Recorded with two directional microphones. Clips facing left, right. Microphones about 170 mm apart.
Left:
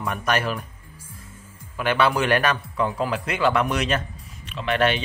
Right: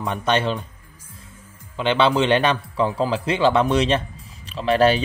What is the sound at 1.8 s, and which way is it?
A man's voice, 25° right (ahead or behind).